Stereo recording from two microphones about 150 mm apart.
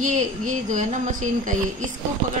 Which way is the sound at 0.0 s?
55° right (ahead or behind).